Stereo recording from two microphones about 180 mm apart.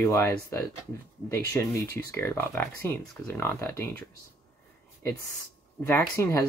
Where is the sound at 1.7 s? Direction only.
15° left (ahead or behind).